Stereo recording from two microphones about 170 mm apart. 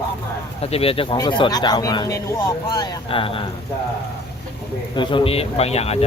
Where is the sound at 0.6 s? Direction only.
35° left (ahead or behind).